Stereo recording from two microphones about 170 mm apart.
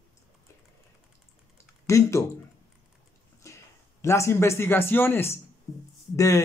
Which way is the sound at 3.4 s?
20° left (ahead or behind).